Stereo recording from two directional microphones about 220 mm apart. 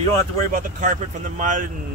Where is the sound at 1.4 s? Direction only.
35° right (ahead or behind).